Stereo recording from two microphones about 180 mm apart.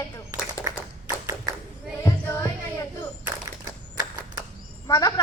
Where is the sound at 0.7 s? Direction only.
20° right (ahead or behind).